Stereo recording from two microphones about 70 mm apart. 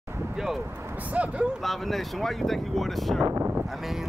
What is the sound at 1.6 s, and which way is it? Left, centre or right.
Speech, centre.